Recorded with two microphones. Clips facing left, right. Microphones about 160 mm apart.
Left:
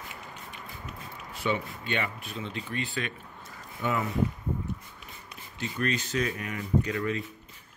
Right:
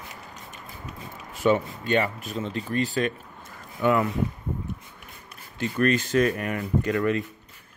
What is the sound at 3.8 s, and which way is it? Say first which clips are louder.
Speech: right 8 dB; 60° right (ahead or behind).